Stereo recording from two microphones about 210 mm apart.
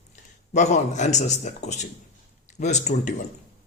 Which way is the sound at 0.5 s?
35° left (ahead or behind).